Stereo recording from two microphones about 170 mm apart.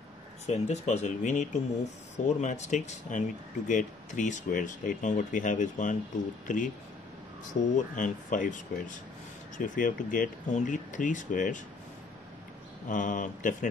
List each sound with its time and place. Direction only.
0.5 s speech: 40° left (ahead or behind)
7.7 s speech: 50° left (ahead or behind)
12.8 s speech: 50° left (ahead or behind)